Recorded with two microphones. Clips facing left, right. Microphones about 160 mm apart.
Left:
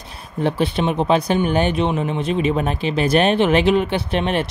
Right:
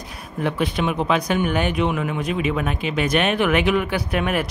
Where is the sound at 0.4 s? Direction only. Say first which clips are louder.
Left 3 dB; 30° left (ahead or behind).